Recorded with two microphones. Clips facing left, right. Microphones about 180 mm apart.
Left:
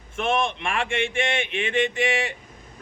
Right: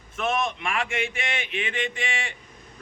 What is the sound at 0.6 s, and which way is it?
Speech, 30° left (ahead or behind).